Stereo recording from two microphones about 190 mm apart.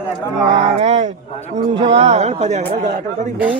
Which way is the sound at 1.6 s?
30° right (ahead or behind).